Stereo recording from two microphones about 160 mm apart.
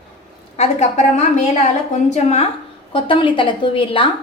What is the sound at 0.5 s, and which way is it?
A woman's voice, 45° left (ahead or behind).